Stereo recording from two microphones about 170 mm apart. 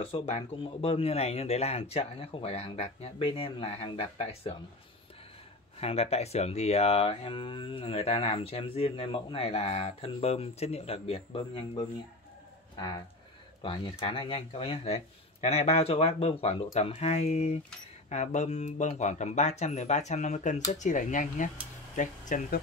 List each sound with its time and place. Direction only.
0.0 s speech: 35° left (ahead or behind)
5.8 s speech: 35° left (ahead or behind)